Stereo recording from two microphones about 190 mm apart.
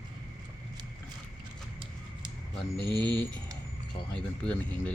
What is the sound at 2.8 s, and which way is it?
Speech, 25° right (ahead or behind).